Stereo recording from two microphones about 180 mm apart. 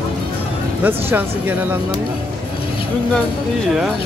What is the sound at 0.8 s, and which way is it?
Speech, 10° right (ahead or behind).